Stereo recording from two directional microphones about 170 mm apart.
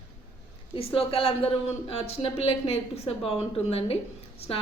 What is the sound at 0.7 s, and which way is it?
A woman's voice, 35° left (ahead or behind).